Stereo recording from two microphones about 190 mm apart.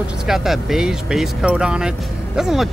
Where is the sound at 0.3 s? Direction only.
Centre (ahead or behind).